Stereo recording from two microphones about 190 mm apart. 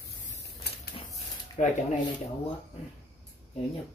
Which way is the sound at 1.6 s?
40° left (ahead or behind).